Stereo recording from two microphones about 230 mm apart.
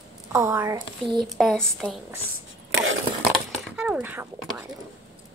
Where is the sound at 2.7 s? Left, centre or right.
Right.